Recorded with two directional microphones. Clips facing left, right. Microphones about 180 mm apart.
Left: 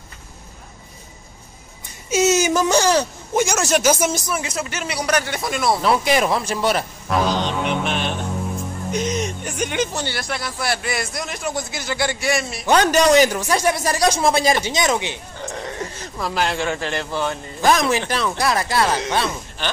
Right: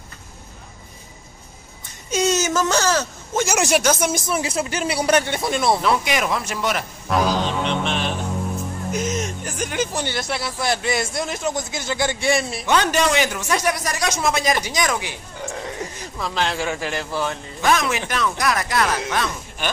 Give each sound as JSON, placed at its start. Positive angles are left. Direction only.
{"t": 2.0, "sound": "speech", "side_deg": 5}
{"t": 3.5, "sound": "speech", "side_deg": -15}
{"t": 3.8, "sound": "speech", "side_deg": 5}
{"t": 4.3, "sound": "a man's voice", "side_deg": -30}
{"t": 5.8, "sound": "speech", "side_deg": 35}
{"t": 7.1, "sound": "music", "side_deg": 0}
{"t": 9.9, "sound": "a man's voice", "side_deg": -20}
{"t": 10.2, "sound": "a man's voice", "side_deg": -5}
{"t": 10.6, "sound": "a man's voice", "side_deg": -20}
{"t": 12.6, "sound": "speech", "side_deg": 40}
{"t": 16.2, "sound": "a man's voice", "side_deg": 5}
{"t": 16.6, "sound": "a man's voice", "side_deg": -5}
{"t": 17.6, "sound": "speech", "side_deg": 35}